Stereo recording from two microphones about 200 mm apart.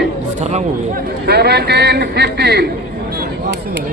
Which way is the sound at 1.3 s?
55° right (ahead or behind).